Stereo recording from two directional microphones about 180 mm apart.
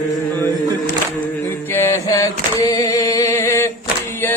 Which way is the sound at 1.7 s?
15° left (ahead or behind).